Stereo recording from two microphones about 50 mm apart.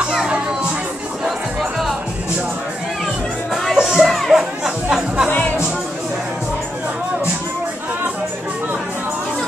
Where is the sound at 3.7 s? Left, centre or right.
Centre.